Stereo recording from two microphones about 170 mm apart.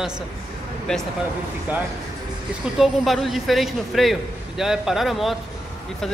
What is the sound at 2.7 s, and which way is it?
Speech, centre (ahead or behind).